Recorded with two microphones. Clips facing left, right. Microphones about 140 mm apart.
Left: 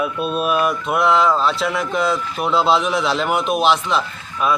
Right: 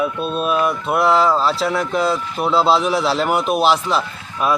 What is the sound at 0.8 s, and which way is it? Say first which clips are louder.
Speech: right 2 dB; 35° right (ahead or behind).